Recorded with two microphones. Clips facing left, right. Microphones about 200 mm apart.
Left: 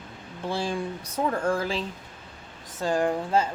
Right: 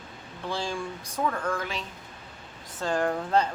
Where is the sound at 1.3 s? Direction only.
30° left (ahead or behind).